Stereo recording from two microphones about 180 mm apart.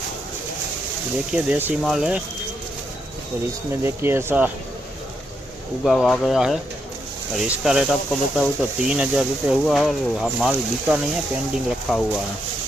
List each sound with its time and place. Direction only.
1.3 s speech: 10° right (ahead or behind)
3.7 s speech: 15° right (ahead or behind)
5.8 s speech: centre (ahead or behind)